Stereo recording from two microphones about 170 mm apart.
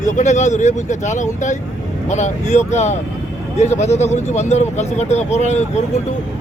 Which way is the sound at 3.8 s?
40° left (ahead or behind).